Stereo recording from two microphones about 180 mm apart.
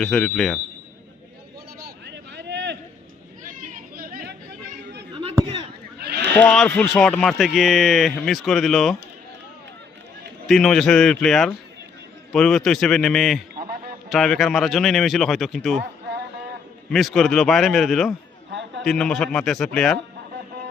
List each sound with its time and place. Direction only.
0.0 s speech: 5° left (ahead or behind)
2.0 s vehicle: 70° right (ahead or behind)
3.4 s chatter: 50° right (ahead or behind)
6.0 s a sound: 65° right (ahead or behind)
6.3 s speech: 5° left (ahead or behind)
10.4 s speech: centre (ahead or behind)
13.6 s a sound: 60° right (ahead or behind)
14.1 s speech: centre (ahead or behind)
16.9 s speech: centre (ahead or behind)